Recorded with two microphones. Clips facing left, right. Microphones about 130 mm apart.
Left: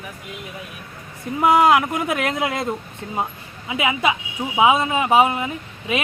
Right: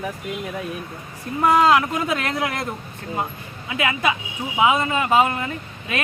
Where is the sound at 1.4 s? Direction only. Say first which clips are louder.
Left 1 dB; 15° left (ahead or behind).